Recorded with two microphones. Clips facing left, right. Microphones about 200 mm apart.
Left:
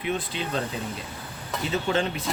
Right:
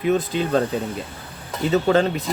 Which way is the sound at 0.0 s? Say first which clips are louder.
Right 9 dB; 40° right (ahead or behind).